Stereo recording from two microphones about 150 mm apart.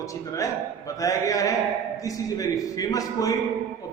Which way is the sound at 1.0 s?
20° left (ahead or behind).